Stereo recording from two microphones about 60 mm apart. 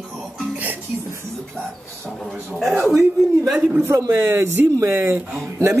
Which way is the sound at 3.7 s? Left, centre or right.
Right.